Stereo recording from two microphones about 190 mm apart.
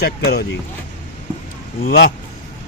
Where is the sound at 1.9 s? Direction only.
55° left (ahead or behind).